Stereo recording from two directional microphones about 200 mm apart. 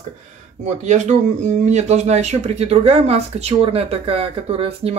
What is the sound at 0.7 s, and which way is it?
Speech, 35° right (ahead or behind).